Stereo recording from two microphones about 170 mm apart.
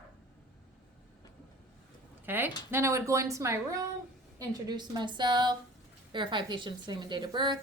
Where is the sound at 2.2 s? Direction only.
10° right (ahead or behind).